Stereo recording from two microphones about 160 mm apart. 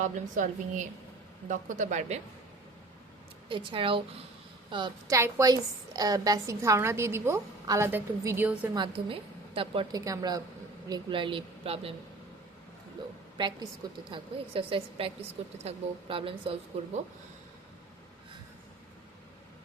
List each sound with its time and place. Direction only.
0.0 s a woman's voice: 50° right (ahead or behind)
3.5 s a woman's voice: 30° right (ahead or behind); by 8.7 s 15° right (ahead or behind)
8.7 s a woman's voice: 30° right (ahead or behind)
10.0 s a woman's voice: 25° right (ahead or behind)
13.3 s a woman's voice: 25° right (ahead or behind)